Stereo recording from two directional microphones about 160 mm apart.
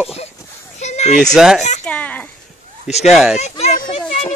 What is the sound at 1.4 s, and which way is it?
Speech, 5° right (ahead or behind).